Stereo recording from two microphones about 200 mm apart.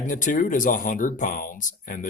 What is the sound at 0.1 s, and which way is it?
Speech, 40° left (ahead or behind).